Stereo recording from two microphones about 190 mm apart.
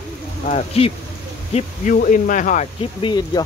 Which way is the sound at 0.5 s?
35° left (ahead or behind).